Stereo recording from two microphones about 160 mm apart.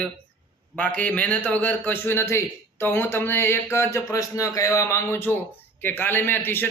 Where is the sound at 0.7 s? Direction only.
10° left (ahead or behind).